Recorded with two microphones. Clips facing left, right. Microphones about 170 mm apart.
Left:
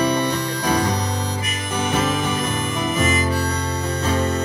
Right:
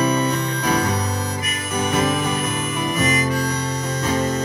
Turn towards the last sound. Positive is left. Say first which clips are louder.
# even
turn(degrees=30)  # may be behind; listen again after turning